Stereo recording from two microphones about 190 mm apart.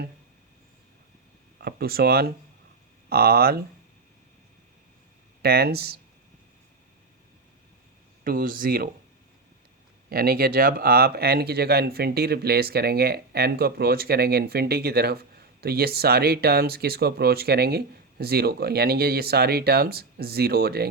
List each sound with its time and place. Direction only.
1.6 s speech: 55° right (ahead or behind)
5.4 s speech: 55° right (ahead or behind)
8.2 s speech: 50° right (ahead or behind)
10.1 s speech: 50° right (ahead or behind)